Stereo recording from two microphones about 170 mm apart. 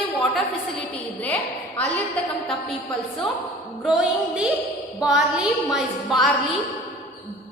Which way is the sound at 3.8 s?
5° right (ahead or behind).